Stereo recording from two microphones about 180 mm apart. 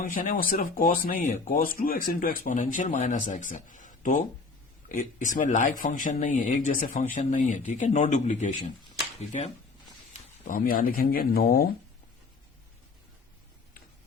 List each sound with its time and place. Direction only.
0.0 s speech: 50° left (ahead or behind)
10.4 s speech: 50° left (ahead or behind)